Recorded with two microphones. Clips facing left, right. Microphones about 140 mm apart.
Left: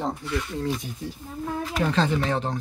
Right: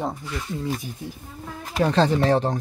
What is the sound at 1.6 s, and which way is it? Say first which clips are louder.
Speech: right 5 dB; 35° right (ahead or behind).